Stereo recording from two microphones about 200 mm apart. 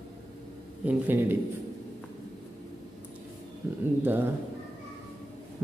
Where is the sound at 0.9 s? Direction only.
10° right (ahead or behind).